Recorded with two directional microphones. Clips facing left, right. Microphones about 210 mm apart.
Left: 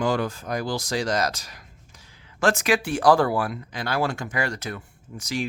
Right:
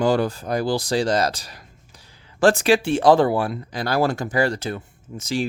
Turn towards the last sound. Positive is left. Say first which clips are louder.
# right 4 dB
turn(degrees=-25)  # may be behind; listen again after turning